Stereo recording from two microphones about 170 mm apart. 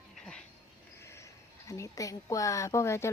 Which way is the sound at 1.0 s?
15° left (ahead or behind).